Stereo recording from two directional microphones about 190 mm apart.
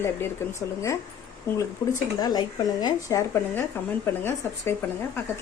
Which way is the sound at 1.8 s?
20° left (ahead or behind).